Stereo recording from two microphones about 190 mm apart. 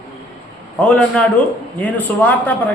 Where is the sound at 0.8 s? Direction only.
5° left (ahead or behind).